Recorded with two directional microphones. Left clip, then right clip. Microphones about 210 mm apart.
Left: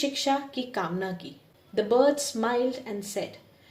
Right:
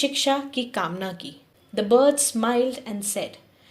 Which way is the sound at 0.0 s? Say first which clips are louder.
Right 4 dB; 20° right (ahead or behind).